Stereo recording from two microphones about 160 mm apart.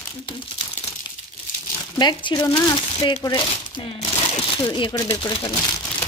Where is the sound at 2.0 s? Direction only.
25° left (ahead or behind).